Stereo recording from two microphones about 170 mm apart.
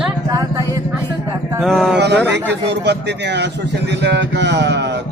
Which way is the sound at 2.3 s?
90° right.